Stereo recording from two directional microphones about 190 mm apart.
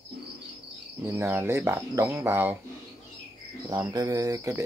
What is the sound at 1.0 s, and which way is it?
Speech, 15° right (ahead or behind).